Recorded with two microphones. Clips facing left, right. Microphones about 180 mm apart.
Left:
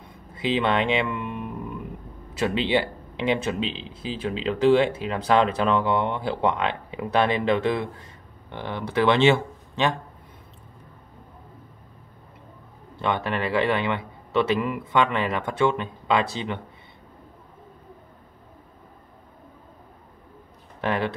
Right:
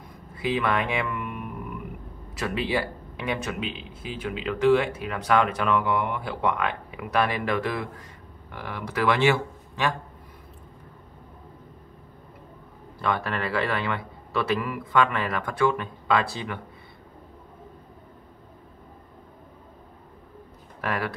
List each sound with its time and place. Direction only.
0.0 s a sound: 25° left (ahead or behind)
2.3 s speech: 25° left (ahead or behind)
13.0 s speech: 20° left (ahead or behind)
20.8 s speech: 25° left (ahead or behind)